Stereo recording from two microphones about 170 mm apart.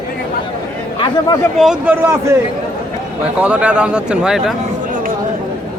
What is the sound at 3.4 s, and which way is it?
Speech, 5° right (ahead or behind).